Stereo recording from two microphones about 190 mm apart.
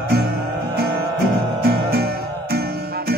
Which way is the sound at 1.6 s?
55° right (ahead or behind).